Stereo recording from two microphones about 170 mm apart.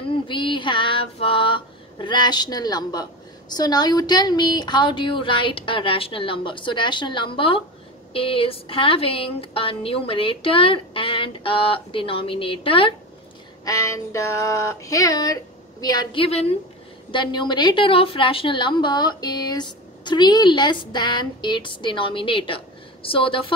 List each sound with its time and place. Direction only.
0.1 s female singing: 30° left (ahead or behind)
8.1 s speech: 30° left (ahead or behind)
13.7 s female singing: 20° left (ahead or behind)
15.8 s speech: 25° left (ahead or behind)
17.1 s female singing: 25° left (ahead or behind)
23.0 s speech: 30° left (ahead or behind)